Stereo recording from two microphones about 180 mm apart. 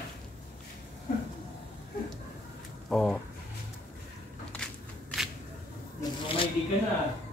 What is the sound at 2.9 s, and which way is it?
Speech, 5° left (ahead or behind).